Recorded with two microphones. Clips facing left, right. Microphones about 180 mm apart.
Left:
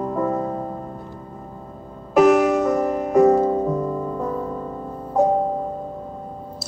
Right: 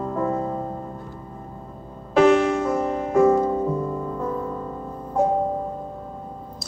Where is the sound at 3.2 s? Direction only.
40° left (ahead or behind).